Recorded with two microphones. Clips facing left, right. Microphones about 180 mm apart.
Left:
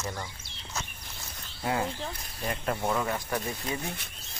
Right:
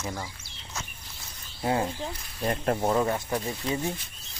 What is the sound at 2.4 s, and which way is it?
Speech, 40° right (ahead or behind).